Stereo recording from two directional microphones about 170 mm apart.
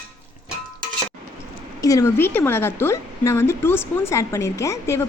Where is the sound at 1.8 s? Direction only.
20° left (ahead or behind).